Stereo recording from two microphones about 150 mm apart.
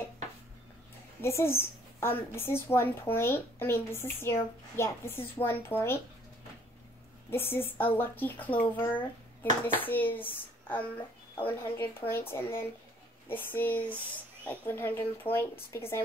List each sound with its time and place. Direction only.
1.2 s a woman's voice: 15° left (ahead or behind)
7.2 s a woman's voice: 15° left (ahead or behind)